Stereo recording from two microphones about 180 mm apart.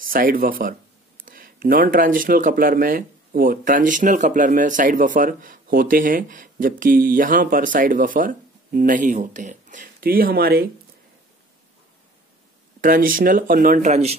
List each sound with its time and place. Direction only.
0.0 s speech: 50° right (ahead or behind)
12.8 s speech: 50° right (ahead or behind)